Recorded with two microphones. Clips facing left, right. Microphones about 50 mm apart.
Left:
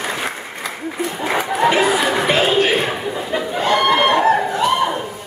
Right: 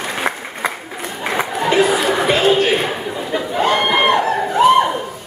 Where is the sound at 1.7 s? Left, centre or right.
Centre.